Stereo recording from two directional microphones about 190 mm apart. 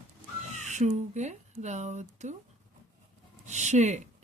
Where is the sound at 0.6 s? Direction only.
40° right (ahead or behind).